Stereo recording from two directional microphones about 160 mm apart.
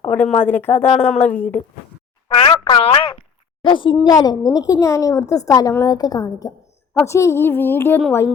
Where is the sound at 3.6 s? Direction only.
30° left (ahead or behind).